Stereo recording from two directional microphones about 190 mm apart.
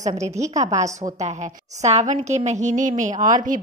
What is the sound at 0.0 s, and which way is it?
Speech, 35° right (ahead or behind).